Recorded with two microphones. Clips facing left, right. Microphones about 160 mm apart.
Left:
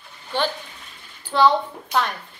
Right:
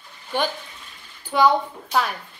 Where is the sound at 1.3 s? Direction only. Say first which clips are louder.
Even; 10° right (ahead or behind).